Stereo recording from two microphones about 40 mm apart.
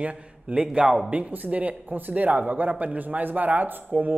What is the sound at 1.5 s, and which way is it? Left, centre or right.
Speech, right.